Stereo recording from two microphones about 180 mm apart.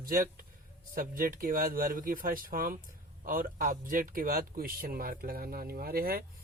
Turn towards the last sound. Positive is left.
turn(degrees=-55)  # may be behind; listen again after turning